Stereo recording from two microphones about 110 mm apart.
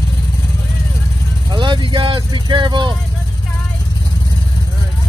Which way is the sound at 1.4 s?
45° right (ahead or behind).